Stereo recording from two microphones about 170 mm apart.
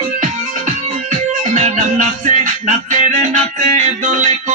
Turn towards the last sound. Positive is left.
turn(degrees=-45)  # may be behind; listen again after turning